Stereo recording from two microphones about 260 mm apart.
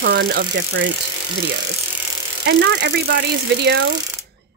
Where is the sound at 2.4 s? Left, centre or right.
Right.